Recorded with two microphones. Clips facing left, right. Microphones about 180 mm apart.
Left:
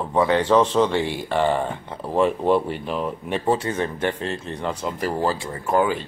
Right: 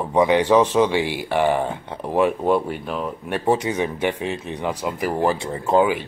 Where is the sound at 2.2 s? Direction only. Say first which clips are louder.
Even; 5° right (ahead or behind); by 5.9 s 20° right (ahead or behind).